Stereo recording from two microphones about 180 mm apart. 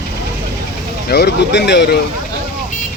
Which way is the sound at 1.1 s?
70° left (ahead or behind).